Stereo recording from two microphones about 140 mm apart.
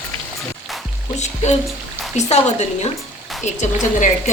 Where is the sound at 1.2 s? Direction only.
55° left (ahead or behind).